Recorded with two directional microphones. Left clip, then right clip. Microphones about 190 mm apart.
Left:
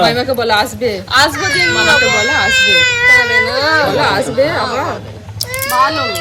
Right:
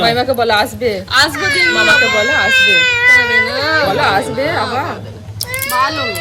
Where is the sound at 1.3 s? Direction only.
20° right (ahead or behind).